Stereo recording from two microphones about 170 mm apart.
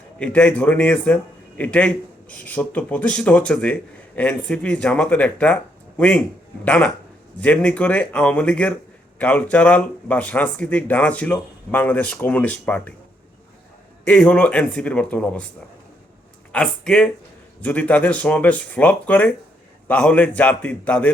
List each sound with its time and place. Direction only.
0.2 s speech: 5° left (ahead or behind)
14.0 s speech: 5° left (ahead or behind)
16.5 s speech: 5° left (ahead or behind)